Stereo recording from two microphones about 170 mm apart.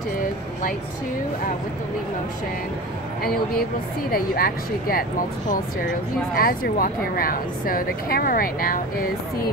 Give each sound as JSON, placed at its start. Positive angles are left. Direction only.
{"t": 3.2, "sound": "a woman's voice", "side_deg": 60}
{"t": 6.3, "sound": "a woman's voice", "side_deg": 60}